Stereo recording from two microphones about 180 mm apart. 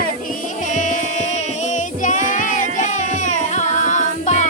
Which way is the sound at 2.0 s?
45° left (ahead or behind).